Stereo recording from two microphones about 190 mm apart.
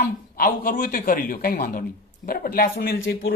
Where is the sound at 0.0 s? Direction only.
50° left (ahead or behind).